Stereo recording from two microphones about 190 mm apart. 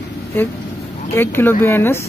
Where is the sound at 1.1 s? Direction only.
10° left (ahead or behind).